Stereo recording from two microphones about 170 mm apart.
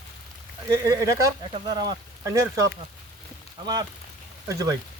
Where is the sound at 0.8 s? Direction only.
20° right (ahead or behind).